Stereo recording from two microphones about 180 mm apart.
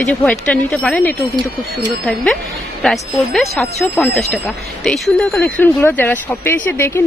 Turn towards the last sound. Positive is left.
turn(degrees=15)  # may be behind; listen again after turning